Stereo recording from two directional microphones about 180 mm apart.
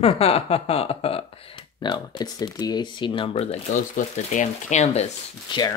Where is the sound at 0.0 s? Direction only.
35° left (ahead or behind).